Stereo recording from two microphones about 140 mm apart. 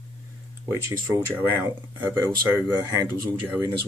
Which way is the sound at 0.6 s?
20° right (ahead or behind).